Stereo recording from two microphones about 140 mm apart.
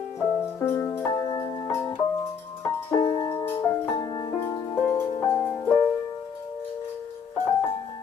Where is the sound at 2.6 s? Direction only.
15° left (ahead or behind).